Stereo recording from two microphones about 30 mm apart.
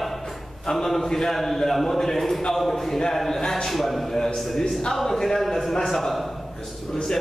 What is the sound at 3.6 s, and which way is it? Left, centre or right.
A man's voice, centre.